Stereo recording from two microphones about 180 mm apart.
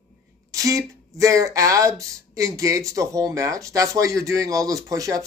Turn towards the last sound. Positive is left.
turn(degrees=-20)  # may be behind; listen again after turning